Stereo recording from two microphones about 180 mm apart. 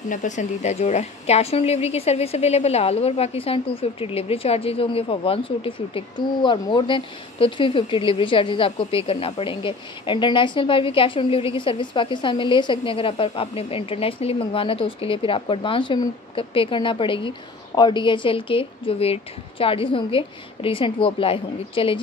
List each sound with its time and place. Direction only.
0.1 s a woman's voice: 45° left (ahead or behind)